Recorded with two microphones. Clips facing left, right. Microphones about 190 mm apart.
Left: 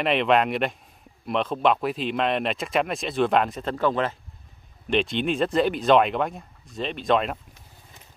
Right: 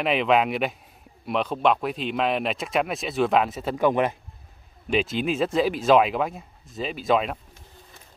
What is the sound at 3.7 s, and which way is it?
Speech, 15° right (ahead or behind).